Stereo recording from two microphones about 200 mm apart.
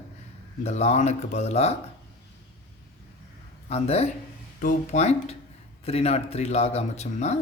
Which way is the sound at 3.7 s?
30° left (ahead or behind).